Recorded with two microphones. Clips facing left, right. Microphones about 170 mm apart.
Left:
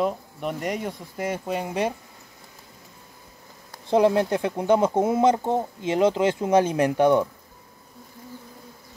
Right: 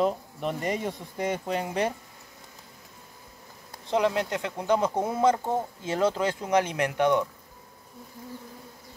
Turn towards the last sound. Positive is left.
turn(degrees=30)  # may be behind; listen again after turning